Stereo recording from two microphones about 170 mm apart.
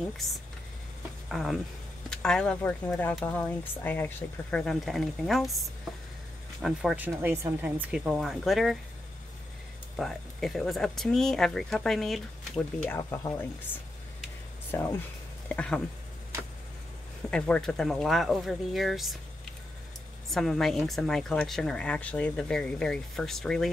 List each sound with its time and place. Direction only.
1.3 s speech: centre (ahead or behind)
9.9 s speech: centre (ahead or behind)
12.9 s speech: 15° left (ahead or behind)
17.3 s speech: 5° left (ahead or behind)
20.2 s speech: centre (ahead or behind)